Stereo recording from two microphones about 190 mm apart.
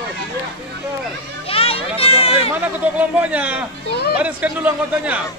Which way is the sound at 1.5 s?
30° left (ahead or behind).